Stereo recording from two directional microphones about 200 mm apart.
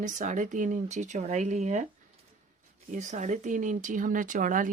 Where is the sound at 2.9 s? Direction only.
40° right (ahead or behind).